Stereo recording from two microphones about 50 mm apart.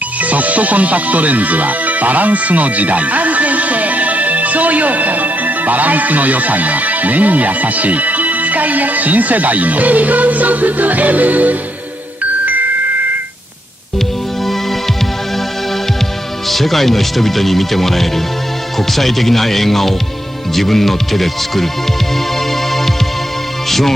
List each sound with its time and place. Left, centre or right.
0.2 s speech: right
16.4 s speech: centre